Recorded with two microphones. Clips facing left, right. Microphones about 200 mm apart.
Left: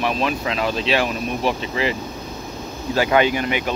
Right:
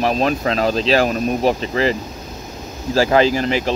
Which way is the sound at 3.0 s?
35° right (ahead or behind).